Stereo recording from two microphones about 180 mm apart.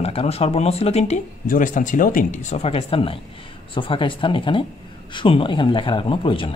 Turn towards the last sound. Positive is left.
turn(degrees=30)  # may be behind; listen again after turning